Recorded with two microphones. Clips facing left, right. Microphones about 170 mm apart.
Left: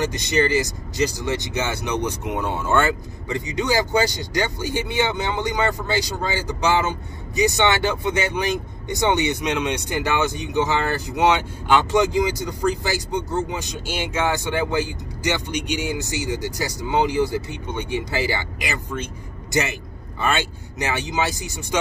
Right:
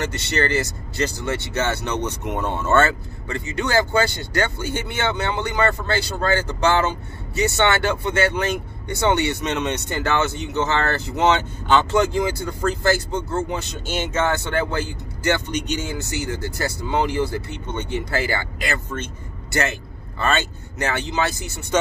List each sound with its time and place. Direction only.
0.6 s a man's voice: 15° left (ahead or behind)